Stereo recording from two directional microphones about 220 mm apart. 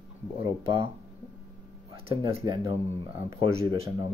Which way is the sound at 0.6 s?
25° right (ahead or behind).